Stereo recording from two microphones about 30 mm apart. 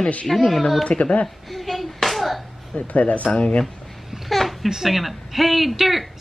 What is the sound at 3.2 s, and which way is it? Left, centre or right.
Speech, left.